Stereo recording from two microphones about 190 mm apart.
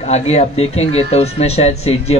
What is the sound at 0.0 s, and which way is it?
Speech, 35° left (ahead or behind).